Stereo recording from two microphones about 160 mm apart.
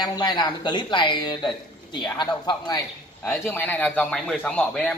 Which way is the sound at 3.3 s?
10° left (ahead or behind).